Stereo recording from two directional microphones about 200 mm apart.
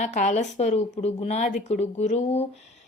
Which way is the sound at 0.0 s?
35° left (ahead or behind).